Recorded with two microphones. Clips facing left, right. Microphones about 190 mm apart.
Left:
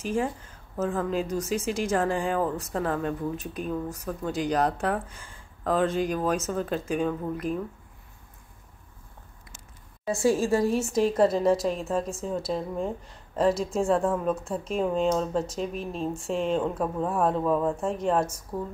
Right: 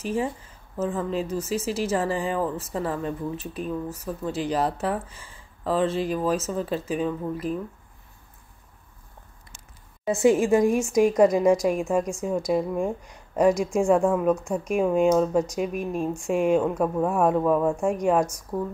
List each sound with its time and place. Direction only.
0.7 s speech: centre (ahead or behind)
10.0 s a woman's voice: 20° right (ahead or behind)